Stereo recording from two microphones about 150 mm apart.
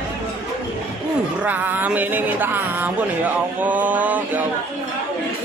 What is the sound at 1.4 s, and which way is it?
A man's voice, 10° right (ahead or behind).